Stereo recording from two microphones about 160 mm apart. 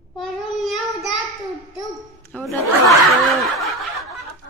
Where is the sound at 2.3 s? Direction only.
10° left (ahead or behind).